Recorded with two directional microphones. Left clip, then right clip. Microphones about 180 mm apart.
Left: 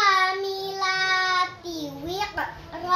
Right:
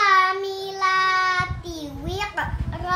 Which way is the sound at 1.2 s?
30° right (ahead or behind).